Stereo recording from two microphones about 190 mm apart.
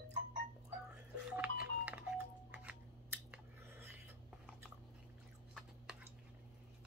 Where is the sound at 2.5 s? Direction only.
10° right (ahead or behind).